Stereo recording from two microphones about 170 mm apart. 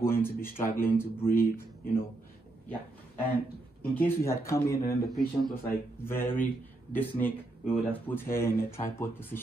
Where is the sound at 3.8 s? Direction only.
10° left (ahead or behind).